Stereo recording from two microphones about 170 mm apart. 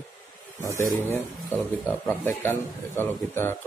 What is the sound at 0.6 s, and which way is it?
Speech, 15° right (ahead or behind).